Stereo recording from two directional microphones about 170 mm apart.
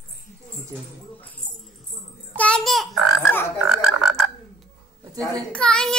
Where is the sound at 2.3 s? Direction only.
5° left (ahead or behind).